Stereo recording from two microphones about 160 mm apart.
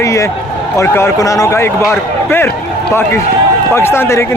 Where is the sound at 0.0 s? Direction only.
20° left (ahead or behind).